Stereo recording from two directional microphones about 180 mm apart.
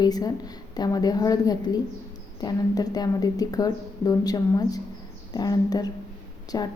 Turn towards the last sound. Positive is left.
turn(degrees=20)  # may be behind; listen again after turning